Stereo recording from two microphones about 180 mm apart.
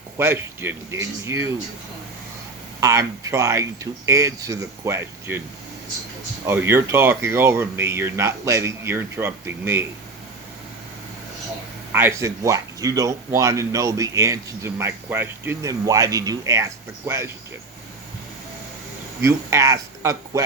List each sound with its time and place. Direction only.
0.2 s speech: 15° right (ahead or behind)
2.8 s speech: 15° right (ahead or behind)
6.4 s speech: 15° right (ahead or behind)
11.9 s speech: 10° right (ahead or behind)
19.2 s speech: 15° right (ahead or behind)